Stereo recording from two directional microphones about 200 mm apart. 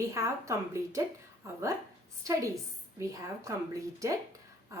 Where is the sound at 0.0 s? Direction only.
15° right (ahead or behind).